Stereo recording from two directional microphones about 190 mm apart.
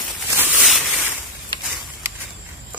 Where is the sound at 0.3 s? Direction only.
10° right (ahead or behind).